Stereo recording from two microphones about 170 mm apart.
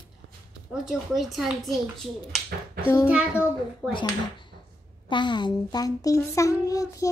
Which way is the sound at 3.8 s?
10° right (ahead or behind).